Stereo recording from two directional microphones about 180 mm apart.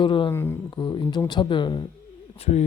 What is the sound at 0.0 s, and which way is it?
Speech, 25° left (ahead or behind).